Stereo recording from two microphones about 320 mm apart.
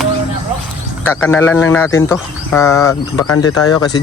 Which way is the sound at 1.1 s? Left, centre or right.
Centre.